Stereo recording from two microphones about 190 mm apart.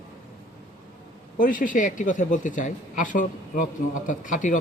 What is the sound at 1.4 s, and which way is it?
A man's voice, 45° left (ahead or behind).